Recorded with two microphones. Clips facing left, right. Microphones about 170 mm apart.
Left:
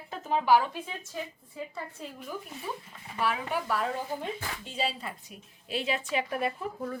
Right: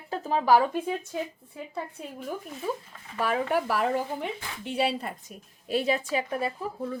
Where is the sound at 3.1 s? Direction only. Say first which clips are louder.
Right 4 dB; 45° right (ahead or behind).